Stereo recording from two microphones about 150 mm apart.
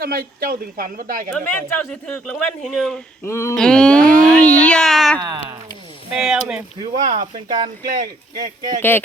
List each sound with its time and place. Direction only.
0.0 s speech: 85° right; by 1.3 s 65° right (ahead or behind)
1.3 s speech: 10° left (ahead or behind)
3.2 s a sound: 20° left (ahead or behind)
3.5 s speech: 5° left (ahead or behind)
4.1 s a sound: 10° left (ahead or behind)
6.1 s speech: 5° right (ahead or behind)
7.1 s speech: 55° right (ahead or behind)
8.4 s speech: 25° right (ahead or behind)
8.8 s speech: 15° left (ahead or behind)